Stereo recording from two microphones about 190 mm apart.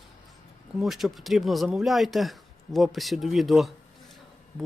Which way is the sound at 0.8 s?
Centre (ahead or behind).